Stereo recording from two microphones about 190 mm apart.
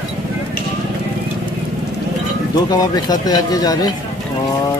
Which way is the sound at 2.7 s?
20° left (ahead or behind).